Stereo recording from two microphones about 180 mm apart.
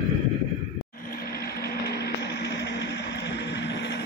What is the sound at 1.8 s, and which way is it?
Vehicle, 65° left (ahead or behind).